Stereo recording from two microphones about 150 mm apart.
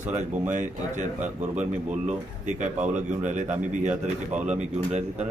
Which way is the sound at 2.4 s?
55° right (ahead or behind).